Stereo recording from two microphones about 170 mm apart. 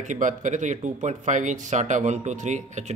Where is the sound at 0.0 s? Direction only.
45° right (ahead or behind).